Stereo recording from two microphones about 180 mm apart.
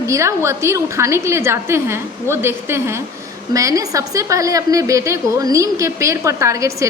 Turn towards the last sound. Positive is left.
turn(degrees=-15)  # may be behind; listen again after turning